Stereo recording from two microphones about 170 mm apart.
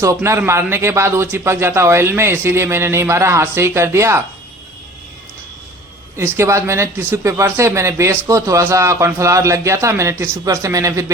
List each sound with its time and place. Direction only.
0.0 s speech: 15° right (ahead or behind)
6.1 s speech: 15° right (ahead or behind)